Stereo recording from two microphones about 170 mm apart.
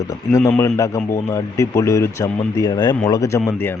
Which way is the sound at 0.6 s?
20° left (ahead or behind).